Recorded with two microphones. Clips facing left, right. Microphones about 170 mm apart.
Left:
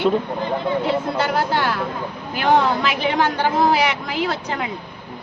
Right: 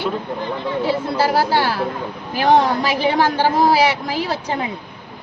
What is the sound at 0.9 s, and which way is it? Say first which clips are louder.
Speech: right 2 dB; 35° right (ahead or behind).